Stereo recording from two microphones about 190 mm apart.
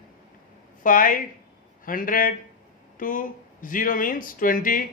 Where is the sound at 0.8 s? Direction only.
45° left (ahead or behind).